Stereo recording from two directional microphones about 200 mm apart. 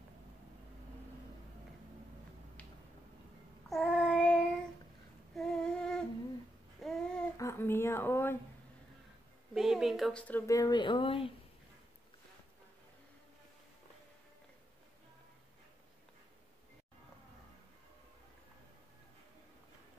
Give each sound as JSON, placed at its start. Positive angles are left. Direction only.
{"t": 3.6, "sound": "child singing", "side_deg": 0}
{"t": 5.3, "sound": "humming", "side_deg": 0}
{"t": 6.8, "sound": "babbling", "side_deg": 0}
{"t": 7.3, "sound": "a sound", "side_deg": 15}
{"t": 9.5, "sound": "speech", "side_deg": 0}